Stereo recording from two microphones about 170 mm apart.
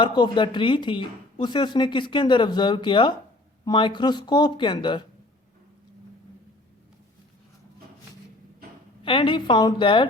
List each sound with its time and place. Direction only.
0.0 s speech: 25° left (ahead or behind)
9.0 s speech: 30° left (ahead or behind)